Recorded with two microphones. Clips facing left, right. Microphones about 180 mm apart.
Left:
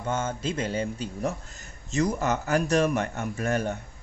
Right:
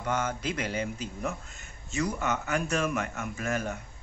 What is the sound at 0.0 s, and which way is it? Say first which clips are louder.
A man's voice: left 2 dB; 30° left (ahead or behind).